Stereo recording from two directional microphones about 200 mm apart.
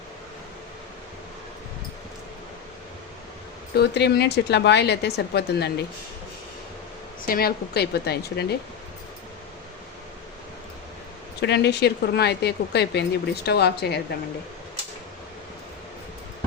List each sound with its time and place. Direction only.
3.8 s speech: 55° left (ahead or behind)
7.3 s a woman's voice: 50° left (ahead or behind)
11.3 s speech: 55° left (ahead or behind)